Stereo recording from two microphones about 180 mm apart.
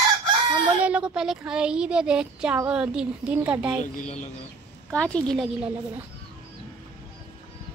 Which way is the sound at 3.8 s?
40° left (ahead or behind).